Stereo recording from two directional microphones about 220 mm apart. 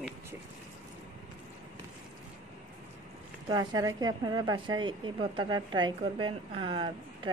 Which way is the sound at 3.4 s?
15° right (ahead or behind).